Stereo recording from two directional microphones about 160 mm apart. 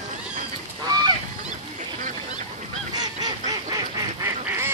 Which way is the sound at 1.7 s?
50° right (ahead or behind).